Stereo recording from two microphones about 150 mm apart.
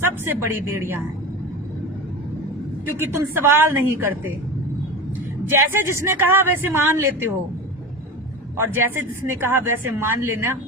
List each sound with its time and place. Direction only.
0.0 s a woman's voice: 15° right (ahead or behind)
3.0 s a woman's voice: 15° right (ahead or behind)
5.5 s a woman's voice: 20° right (ahead or behind)
8.5 s a woman's voice: 15° right (ahead or behind)